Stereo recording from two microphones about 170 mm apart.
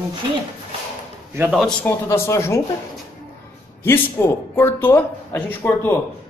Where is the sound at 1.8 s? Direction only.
15° left (ahead or behind).